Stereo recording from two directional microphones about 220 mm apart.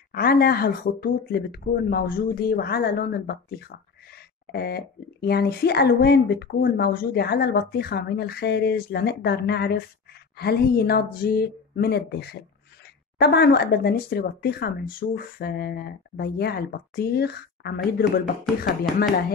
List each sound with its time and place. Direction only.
0.1 s speech: 45° left (ahead or behind)